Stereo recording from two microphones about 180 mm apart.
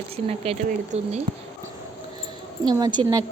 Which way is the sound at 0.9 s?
35° right (ahead or behind).